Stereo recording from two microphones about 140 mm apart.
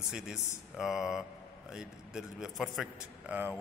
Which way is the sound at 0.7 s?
Centre (ahead or behind).